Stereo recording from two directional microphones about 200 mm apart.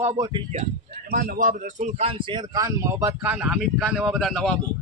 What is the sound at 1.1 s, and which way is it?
Speech, 45° right (ahead or behind).